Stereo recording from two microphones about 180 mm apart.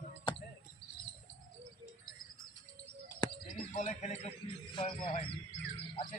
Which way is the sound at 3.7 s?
40° left (ahead or behind).